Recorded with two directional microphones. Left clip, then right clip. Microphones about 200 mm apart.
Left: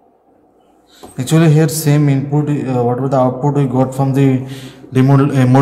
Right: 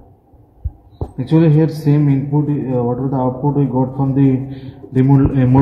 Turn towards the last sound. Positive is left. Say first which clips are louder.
# left 2 dB
turn(degrees=50)  # may be behind; listen again after turning